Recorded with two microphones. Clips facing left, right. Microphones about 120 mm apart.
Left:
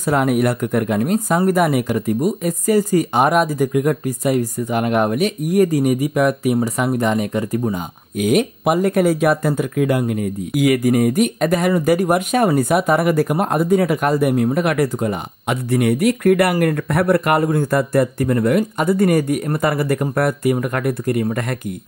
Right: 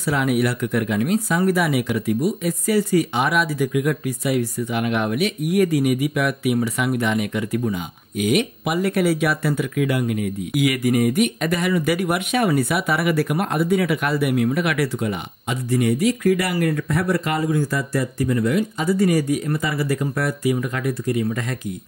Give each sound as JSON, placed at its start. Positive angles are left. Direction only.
{"t": 0.0, "sound": "speech", "side_deg": 45}
{"t": 15.4, "sound": "speech", "side_deg": 60}